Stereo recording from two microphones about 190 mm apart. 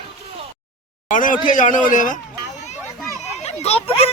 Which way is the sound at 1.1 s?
45° left (ahead or behind).